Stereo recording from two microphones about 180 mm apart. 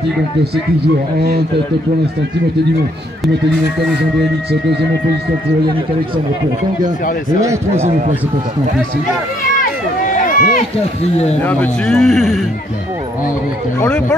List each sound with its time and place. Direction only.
4.5 s speech: 70° right (ahead or behind)
9.6 s run: 50° left (ahead or behind)
11.4 s speech: 5° left (ahead or behind)
13.7 s speech: 5° left (ahead or behind)